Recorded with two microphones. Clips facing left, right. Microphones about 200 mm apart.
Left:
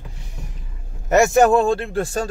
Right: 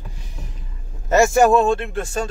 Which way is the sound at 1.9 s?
35° left (ahead or behind).